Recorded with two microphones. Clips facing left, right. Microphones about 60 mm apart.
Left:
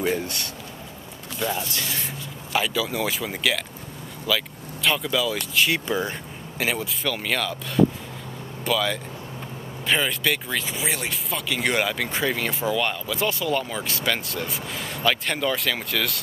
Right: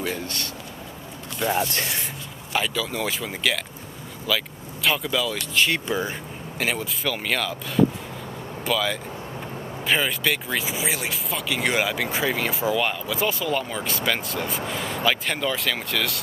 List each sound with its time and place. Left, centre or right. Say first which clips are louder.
0.0 s a sound: left 4 dB; centre
1.5 s speech: right 5 dB; right
2.5 s speech: left 1 dB; centre